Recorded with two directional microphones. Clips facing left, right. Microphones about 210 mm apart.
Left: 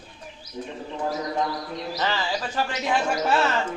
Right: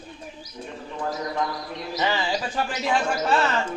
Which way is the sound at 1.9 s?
15° right (ahead or behind).